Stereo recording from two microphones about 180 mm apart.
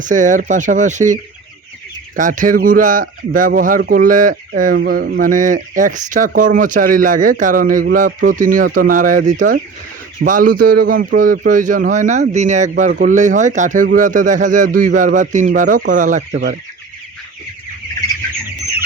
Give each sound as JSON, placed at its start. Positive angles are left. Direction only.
{"t": 0.0, "sound": "speech", "side_deg": -45}